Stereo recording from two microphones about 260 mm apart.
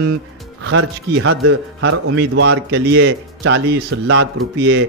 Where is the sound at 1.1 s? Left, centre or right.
Right.